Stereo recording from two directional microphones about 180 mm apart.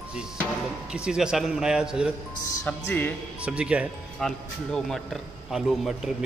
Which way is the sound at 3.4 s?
5° right (ahead or behind).